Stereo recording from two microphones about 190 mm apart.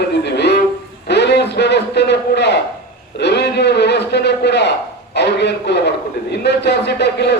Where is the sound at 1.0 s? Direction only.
60° left (ahead or behind).